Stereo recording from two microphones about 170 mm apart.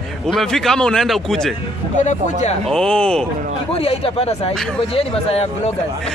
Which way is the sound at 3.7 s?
35° left (ahead or behind).